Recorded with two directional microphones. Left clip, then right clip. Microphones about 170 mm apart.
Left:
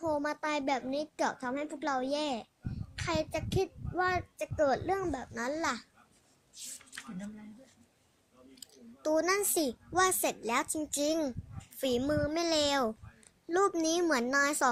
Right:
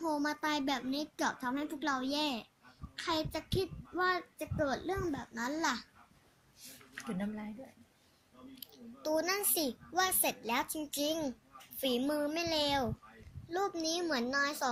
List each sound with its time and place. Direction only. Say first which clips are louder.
0.0 s a child's voice: left 2 dB; 35° left (ahead or behind)
6.6 s speech: left 8 dB; 20° left (ahead or behind)
8.6 s a child's voice: left 4 dB; 40° left (ahead or behind)